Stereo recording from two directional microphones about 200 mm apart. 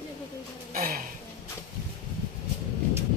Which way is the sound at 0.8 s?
45° right (ahead or behind).